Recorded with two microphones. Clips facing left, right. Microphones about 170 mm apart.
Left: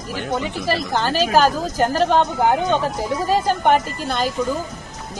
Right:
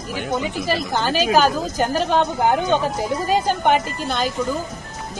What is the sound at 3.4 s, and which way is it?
Speech, centre (ahead or behind).